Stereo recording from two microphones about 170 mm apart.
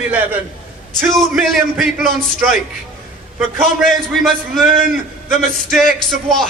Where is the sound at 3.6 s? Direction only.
Centre (ahead or behind).